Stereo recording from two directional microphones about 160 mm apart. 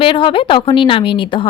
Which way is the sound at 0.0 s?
30° left (ahead or behind).